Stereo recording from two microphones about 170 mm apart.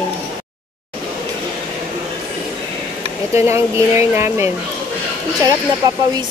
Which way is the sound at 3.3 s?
15° right (ahead or behind).